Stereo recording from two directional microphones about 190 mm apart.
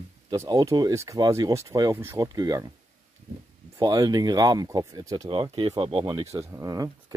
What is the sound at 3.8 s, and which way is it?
Speech, 20° right (ahead or behind).